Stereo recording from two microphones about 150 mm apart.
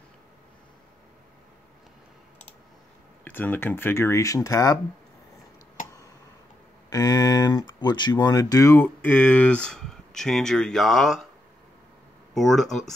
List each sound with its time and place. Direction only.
3.3 s speech: 15° left (ahead or behind)
6.9 s speech: 25° left (ahead or behind); by 11.2 s centre (ahead or behind)
12.4 s speech: centre (ahead or behind)